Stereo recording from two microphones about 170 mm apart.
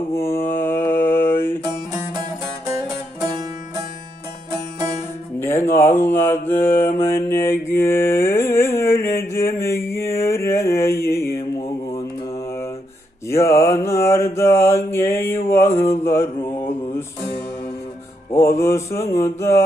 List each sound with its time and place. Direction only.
0.1 s mantra: 15° left (ahead or behind)
5.4 s mantra: 15° left (ahead or behind)
13.3 s mantra: 15° left (ahead or behind)
18.4 s mantra: 15° left (ahead or behind)